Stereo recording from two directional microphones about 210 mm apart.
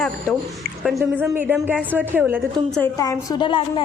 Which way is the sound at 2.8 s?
15° left (ahead or behind).